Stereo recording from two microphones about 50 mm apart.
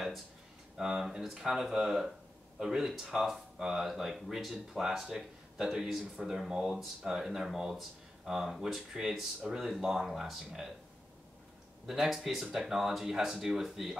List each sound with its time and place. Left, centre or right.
0.7 s speech: centre
11.8 s speech: centre